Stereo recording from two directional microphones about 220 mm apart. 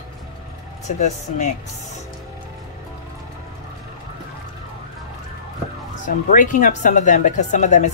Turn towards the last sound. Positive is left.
turn(degrees=35)  # may be behind; listen again after turning